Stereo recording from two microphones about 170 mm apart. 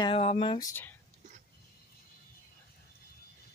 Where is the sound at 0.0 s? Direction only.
35° left (ahead or behind).